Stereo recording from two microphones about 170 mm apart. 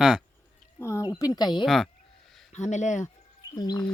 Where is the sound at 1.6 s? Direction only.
Centre (ahead or behind).